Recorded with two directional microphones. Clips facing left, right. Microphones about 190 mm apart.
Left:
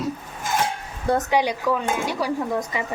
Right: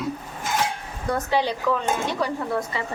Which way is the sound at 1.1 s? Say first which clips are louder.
Left 2 dB; 15° left (ahead or behind).